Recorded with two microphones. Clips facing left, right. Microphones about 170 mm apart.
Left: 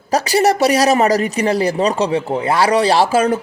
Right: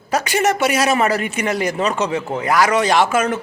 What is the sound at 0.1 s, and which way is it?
A man's voice, 35° left (ahead or behind).